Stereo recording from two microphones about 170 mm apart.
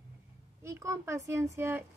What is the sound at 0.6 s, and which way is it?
Speech, 15° right (ahead or behind).